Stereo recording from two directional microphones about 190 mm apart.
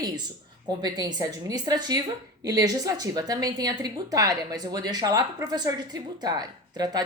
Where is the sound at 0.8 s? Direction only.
20° right (ahead or behind).